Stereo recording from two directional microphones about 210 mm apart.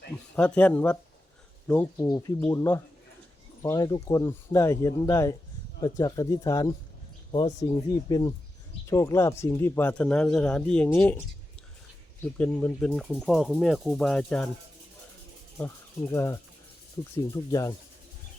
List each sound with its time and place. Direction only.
0.3 s speech: 5° left (ahead or behind)
12.2 s speech: 5° left (ahead or behind)
16.1 s speech: 15° left (ahead or behind)